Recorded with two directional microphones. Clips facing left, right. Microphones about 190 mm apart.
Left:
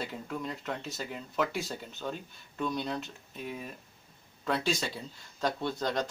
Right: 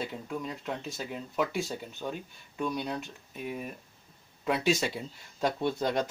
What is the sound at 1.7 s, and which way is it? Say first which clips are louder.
Speech: right 1 dB; 10° right (ahead or behind).